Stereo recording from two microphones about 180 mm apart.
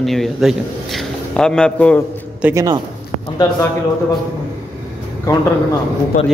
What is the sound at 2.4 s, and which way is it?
Speech, 15° right (ahead or behind).